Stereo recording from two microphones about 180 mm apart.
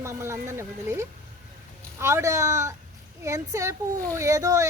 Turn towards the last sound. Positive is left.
turn(degrees=-20)  # may be behind; listen again after turning